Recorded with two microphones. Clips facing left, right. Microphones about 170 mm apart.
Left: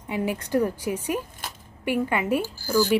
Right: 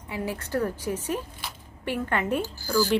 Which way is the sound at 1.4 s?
45° left (ahead or behind).